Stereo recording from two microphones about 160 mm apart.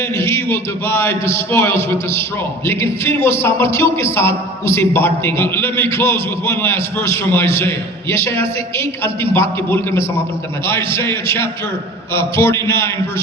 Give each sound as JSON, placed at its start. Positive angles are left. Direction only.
{"t": 0.0, "sound": "a man's voice", "side_deg": 15}